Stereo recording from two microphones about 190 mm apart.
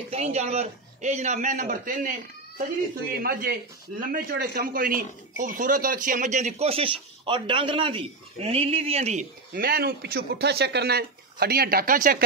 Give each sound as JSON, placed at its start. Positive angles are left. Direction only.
{"t": 0.1, "sound": "a man's voice", "side_deg": -35}
{"t": 9.5, "sound": "a man's voice", "side_deg": -50}